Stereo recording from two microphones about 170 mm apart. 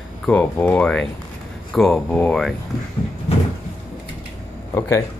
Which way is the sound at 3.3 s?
35° left (ahead or behind).